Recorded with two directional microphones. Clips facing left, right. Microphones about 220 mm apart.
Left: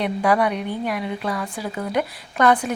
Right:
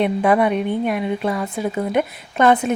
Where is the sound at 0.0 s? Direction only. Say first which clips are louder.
Right 4 dB; 25° right (ahead or behind).